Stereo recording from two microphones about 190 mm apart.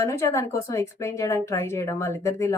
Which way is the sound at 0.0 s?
15° left (ahead or behind).